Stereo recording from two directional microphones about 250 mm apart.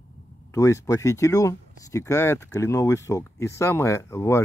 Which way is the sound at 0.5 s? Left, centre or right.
Centre.